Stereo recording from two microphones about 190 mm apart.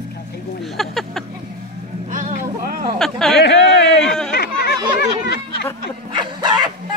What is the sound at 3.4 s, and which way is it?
Speech, 65° left (ahead or behind).